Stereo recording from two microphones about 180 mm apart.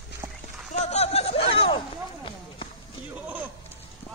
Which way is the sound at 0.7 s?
35° left (ahead or behind).